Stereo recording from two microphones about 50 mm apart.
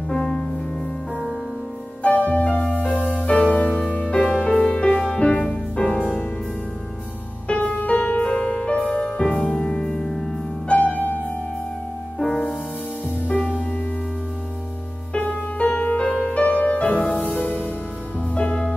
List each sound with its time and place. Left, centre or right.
0.1 s music: centre
2.0 s music: left
4.9 s music: centre
5.9 s music: centre
7.4 s music: left; by 10.3 s centre
10.7 s music: left
15.1 s music: left
18.3 s music: left